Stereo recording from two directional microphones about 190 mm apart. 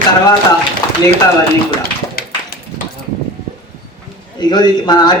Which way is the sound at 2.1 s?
55° left (ahead or behind).